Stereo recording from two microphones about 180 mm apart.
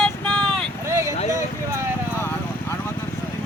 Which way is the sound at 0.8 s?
15° right (ahead or behind).